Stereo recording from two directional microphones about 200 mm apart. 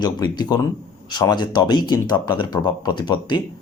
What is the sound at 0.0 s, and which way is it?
A man's voice, 20° left (ahead or behind).